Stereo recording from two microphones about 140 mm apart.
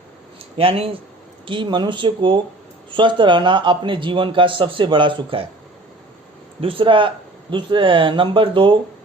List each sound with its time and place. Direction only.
0.5 s a man's voice: 45° right (ahead or behind)
6.6 s a man's voice: 40° right (ahead or behind)